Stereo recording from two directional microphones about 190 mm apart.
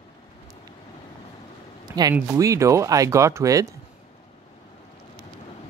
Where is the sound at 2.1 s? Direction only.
15° right (ahead or behind).